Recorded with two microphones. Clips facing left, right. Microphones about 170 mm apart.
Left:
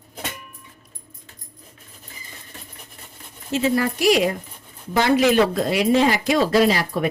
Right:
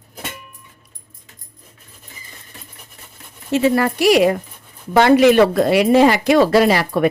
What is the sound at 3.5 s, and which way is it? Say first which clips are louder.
A man's voice: right 5 dB; 65° right (ahead or behind).